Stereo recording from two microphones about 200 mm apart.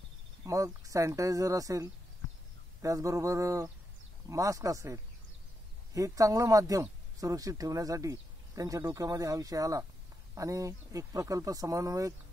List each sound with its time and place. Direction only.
0.5 s speech: 15° right (ahead or behind)